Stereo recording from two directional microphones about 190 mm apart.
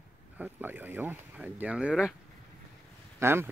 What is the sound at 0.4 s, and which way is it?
Speech, 10° right (ahead or behind).